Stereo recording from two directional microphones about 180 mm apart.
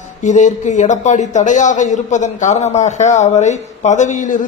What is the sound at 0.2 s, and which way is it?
A man's voice, 45° left (ahead or behind).